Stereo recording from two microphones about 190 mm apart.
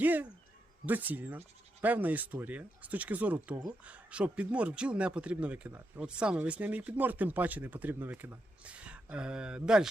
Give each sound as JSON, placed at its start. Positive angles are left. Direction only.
{"t": 0.0, "sound": "speech", "side_deg": -10}
{"t": 3.5, "sound": "speech", "side_deg": -20}
{"t": 3.8, "sound": "speech", "side_deg": -5}